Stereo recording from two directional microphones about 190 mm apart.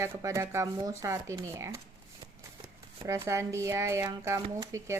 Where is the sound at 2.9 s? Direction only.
15° right (ahead or behind).